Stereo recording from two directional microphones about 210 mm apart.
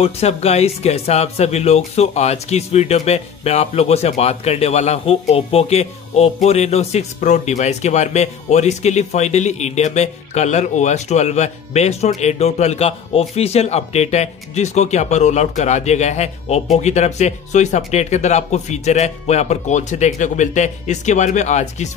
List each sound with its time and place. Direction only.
0.0 s speech: 30° left (ahead or behind)